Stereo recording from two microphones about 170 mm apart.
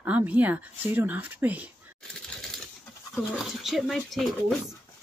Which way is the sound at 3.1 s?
Centre (ahead or behind).